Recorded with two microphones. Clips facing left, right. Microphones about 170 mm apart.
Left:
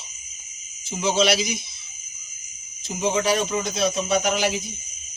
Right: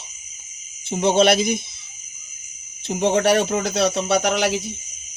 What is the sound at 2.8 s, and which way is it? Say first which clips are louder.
Speech: right 5 dB; 65° right (ahead or behind).